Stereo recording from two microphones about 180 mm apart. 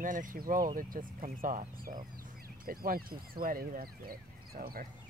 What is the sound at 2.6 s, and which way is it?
Speech, 55° right (ahead or behind).